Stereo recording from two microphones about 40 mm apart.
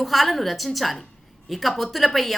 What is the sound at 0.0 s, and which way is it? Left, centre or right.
A woman's voice, centre.